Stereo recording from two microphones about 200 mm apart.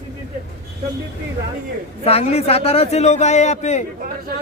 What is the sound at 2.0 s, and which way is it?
A man's voice, 30° left (ahead or behind).